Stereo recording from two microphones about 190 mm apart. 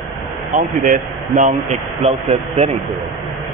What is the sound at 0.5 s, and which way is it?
Speech, 40° right (ahead or behind).